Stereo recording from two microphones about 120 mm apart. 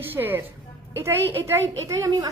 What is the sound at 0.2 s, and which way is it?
A woman's voice, 15° right (ahead or behind).